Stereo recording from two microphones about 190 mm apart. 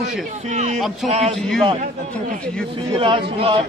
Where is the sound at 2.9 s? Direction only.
30° right (ahead or behind).